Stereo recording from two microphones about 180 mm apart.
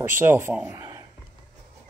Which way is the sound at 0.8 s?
20° right (ahead or behind).